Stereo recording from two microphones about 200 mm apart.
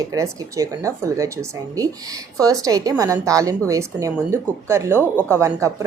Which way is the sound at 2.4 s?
15° right (ahead or behind).